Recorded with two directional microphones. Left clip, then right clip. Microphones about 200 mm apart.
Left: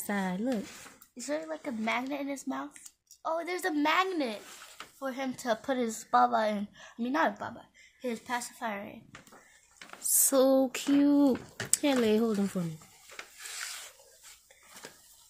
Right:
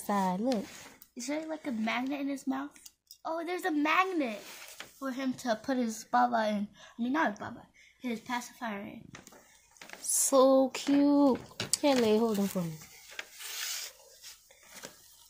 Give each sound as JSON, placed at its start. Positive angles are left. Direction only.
{"t": 0.0, "sound": "a woman's voice", "side_deg": 5}
{"t": 5.0, "sound": "speech", "side_deg": 30}
{"t": 6.8, "sound": "a woman's voice", "side_deg": 35}
{"t": 10.0, "sound": "speech", "side_deg": 15}